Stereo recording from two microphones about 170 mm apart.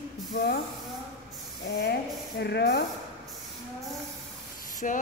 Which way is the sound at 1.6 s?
80° left.